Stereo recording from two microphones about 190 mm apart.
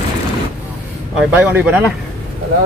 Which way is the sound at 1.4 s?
10° right (ahead or behind).